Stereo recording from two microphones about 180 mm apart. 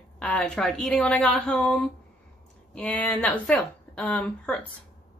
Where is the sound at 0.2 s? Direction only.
5° left (ahead or behind).